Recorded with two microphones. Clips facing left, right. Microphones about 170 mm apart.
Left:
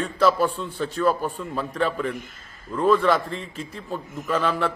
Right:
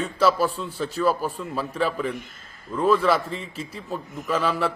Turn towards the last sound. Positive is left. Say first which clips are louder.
# even
turn(degrees=0)  # may be behind; listen again after turning